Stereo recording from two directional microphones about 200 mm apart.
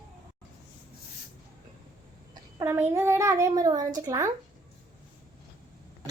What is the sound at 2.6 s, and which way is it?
A woman's voice, 10° right (ahead or behind).